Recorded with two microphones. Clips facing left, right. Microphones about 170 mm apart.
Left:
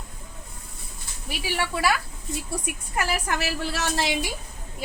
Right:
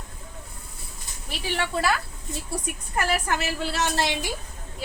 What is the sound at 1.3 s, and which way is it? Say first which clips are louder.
Speech: even; 10° left (ahead or behind).